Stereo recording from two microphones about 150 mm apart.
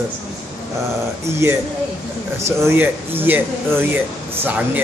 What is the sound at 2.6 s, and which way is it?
Speech, 15° right (ahead or behind).